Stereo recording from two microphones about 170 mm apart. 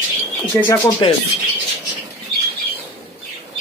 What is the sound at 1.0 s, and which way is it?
Speech, 30° left (ahead or behind).